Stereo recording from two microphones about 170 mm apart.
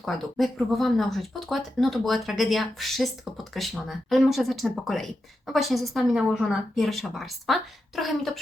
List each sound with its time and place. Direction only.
0.0 s speech: centre (ahead or behind)